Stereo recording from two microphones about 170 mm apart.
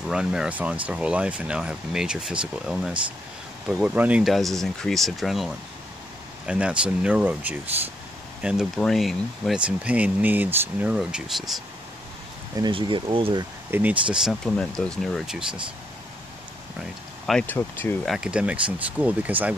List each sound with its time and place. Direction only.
0.1 s speech: 5° right (ahead or behind)
12.5 s speech: 25° right (ahead or behind)
13.7 s speech: 10° right (ahead or behind)
14.1 s speech: centre (ahead or behind)
17.3 s speech: 10° left (ahead or behind)
18.0 s speech: 5° right (ahead or behind)